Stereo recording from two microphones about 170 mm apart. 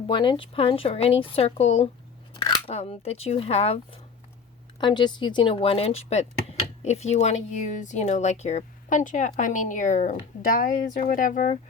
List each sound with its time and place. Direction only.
0.1 s speech: 30° left (ahead or behind)
2.3 s scissors: 25° left (ahead or behind)
2.7 s speech: 35° left (ahead or behind)
4.8 s speech: 25° left (ahead or behind); by 11.5 s 50° left (ahead or behind)